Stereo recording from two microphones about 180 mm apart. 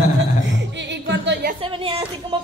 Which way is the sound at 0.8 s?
75° right (ahead or behind).